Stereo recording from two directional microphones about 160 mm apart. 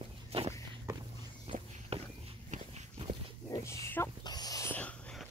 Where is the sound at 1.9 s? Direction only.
40° right (ahead or behind).